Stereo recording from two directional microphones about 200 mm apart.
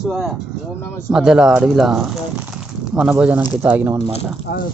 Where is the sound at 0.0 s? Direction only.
Centre (ahead or behind).